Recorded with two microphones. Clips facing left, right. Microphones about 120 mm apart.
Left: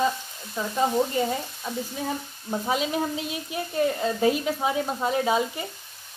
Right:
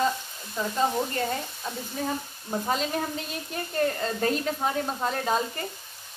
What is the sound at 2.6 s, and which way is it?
A woman's voice, 5° left (ahead or behind).